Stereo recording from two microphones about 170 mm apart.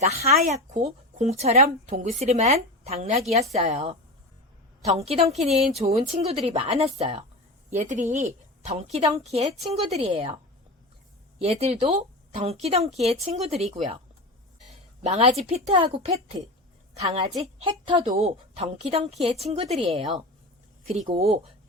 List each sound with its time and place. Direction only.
0.0 s speech: 40° right (ahead or behind)
11.3 s speech: 35° right (ahead or behind)
15.0 s speech: 40° right (ahead or behind)
17.4 s speech: 35° right (ahead or behind)